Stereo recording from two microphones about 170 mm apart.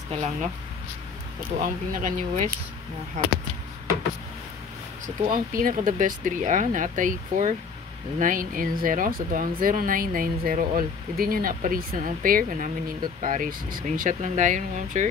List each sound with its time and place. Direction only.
0.1 s speech: 40° right (ahead or behind)
1.6 s speech: 50° right (ahead or behind)
5.0 s speech: 55° right (ahead or behind)